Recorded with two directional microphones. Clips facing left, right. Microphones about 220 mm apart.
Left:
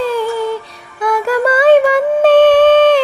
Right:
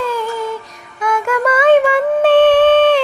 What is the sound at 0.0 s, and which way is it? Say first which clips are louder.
Music: left 4 dB; 30° left (ahead or behind).